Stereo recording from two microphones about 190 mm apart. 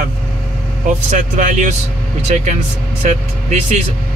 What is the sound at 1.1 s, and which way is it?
Speech, 40° right (ahead or behind).